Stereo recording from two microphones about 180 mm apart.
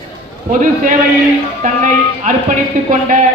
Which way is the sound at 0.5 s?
45° right (ahead or behind).